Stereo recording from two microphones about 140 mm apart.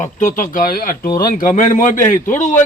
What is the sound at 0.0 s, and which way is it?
A man's voice, 70° left (ahead or behind).